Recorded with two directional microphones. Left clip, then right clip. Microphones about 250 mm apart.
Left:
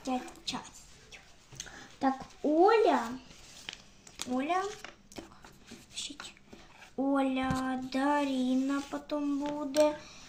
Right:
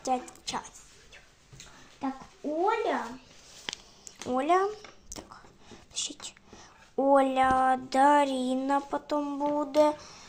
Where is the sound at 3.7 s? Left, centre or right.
Right.